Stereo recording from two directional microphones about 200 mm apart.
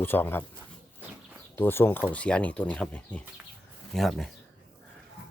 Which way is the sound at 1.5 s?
10° left (ahead or behind).